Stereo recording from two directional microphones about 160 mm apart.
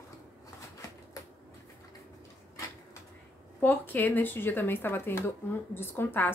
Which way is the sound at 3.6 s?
10° left (ahead or behind).